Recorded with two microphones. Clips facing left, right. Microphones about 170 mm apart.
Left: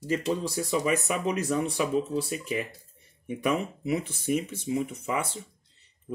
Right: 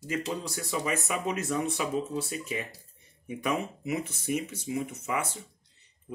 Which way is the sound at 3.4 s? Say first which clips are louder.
Left 3 dB; 30° left (ahead or behind).